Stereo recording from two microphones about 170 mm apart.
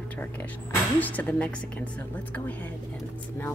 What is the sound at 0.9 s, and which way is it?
Speech, 10° left (ahead or behind).